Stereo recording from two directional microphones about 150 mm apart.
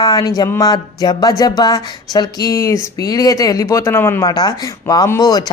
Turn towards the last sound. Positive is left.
turn(degrees=25)  # may be behind; listen again after turning